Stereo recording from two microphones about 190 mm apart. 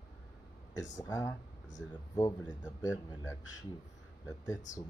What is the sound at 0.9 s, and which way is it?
A man's voice, 20° left (ahead or behind).